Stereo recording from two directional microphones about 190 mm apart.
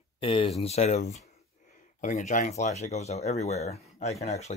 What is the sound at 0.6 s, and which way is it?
Speech, 35° left (ahead or behind).